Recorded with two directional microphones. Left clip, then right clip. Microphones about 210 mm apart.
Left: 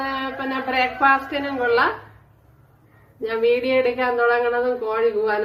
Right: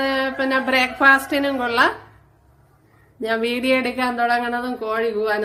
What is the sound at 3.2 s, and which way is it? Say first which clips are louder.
A woman's voice: left 1 dB; 55° right (ahead or behind).